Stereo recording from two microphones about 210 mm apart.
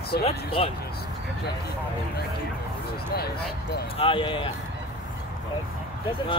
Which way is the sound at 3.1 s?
50° left (ahead or behind).